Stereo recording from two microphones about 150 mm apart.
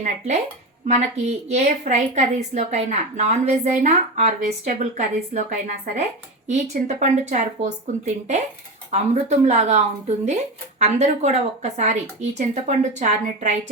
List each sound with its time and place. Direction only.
0.9 s a woman's voice: 50° right (ahead or behind)